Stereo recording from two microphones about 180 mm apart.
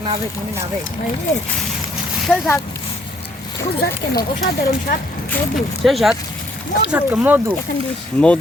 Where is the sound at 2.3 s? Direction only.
5° left (ahead or behind).